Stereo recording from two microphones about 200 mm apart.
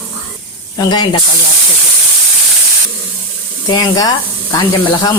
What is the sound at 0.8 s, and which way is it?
Speech, 20° left (ahead or behind).